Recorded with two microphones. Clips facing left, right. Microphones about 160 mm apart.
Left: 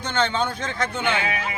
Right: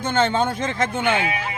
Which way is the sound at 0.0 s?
50° right (ahead or behind).